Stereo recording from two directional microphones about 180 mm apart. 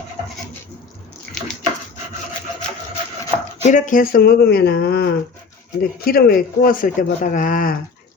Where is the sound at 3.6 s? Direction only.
45° left (ahead or behind).